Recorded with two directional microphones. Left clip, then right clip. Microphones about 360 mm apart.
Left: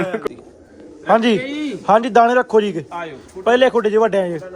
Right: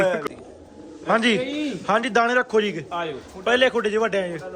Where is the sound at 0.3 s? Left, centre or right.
Centre.